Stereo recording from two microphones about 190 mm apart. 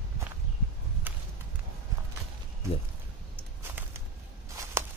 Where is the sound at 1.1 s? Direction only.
10° right (ahead or behind).